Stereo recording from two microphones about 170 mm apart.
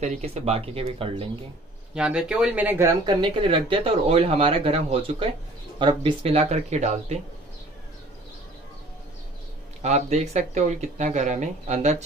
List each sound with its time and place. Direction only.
0.0 s speech: 40° right (ahead or behind)
2.0 s speech: 5° right (ahead or behind); by 7.2 s 40° right (ahead or behind)
9.8 s speech: 40° right (ahead or behind)